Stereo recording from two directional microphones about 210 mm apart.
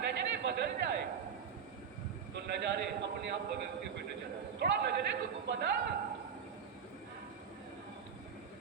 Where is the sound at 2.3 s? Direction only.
50° right (ahead or behind).